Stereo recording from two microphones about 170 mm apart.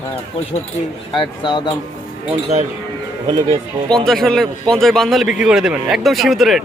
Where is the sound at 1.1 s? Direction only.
30° left (ahead or behind).